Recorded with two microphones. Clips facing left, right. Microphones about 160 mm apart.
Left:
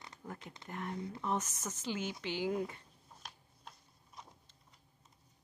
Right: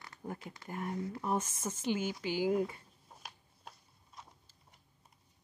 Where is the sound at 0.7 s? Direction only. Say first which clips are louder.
Right 3 dB; 10° right (ahead or behind).